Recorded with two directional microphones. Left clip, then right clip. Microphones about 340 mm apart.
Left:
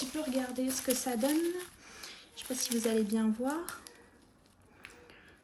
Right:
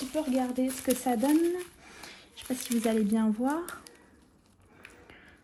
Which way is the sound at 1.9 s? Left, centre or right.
Centre.